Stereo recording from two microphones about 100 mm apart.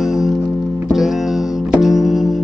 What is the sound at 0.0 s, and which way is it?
Music, 5° right (ahead or behind).